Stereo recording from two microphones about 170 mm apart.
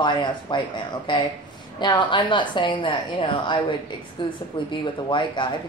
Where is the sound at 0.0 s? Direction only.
25° left (ahead or behind).